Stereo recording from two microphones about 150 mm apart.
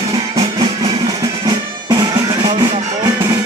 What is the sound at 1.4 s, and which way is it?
Music, 30° right (ahead or behind).